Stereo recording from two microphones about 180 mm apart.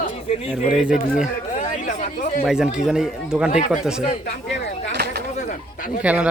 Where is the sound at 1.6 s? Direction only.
45° left (ahead or behind).